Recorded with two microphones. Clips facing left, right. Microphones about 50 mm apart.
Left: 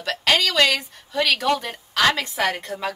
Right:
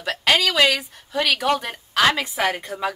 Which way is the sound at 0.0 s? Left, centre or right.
Centre.